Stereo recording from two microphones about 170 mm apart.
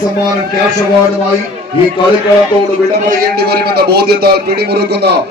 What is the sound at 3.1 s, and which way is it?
A man's voice, 65° right (ahead or behind).